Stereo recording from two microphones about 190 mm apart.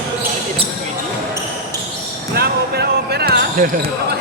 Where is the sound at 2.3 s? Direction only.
60° right (ahead or behind).